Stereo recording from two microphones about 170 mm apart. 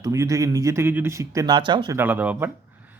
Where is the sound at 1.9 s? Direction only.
10° right (ahead or behind).